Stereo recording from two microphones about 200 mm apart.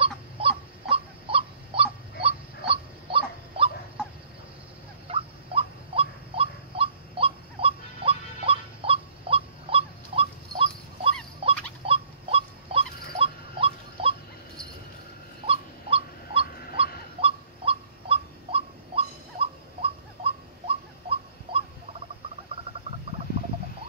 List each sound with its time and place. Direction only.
0.0 s goose: 30° right (ahead or behind)
5.0 s rodents: 30° right (ahead or behind)
11.8 s a sound: 30° right (ahead or behind)
15.4 s owl: 30° right (ahead or behind)